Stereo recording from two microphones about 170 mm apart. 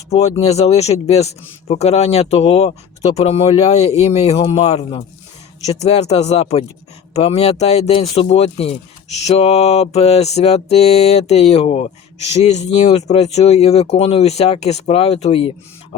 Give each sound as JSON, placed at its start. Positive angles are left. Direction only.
{"t": 0.1, "sound": "speech", "side_deg": 40}
{"t": 13.1, "sound": "speech", "side_deg": 40}